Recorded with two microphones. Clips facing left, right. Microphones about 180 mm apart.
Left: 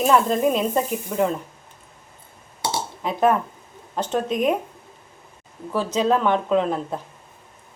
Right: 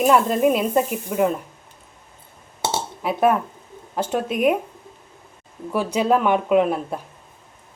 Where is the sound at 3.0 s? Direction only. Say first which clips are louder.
Right 1 dB; 10° right (ahead or behind).